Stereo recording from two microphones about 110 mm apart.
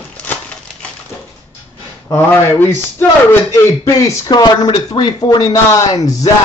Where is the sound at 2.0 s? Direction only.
20° left (ahead or behind).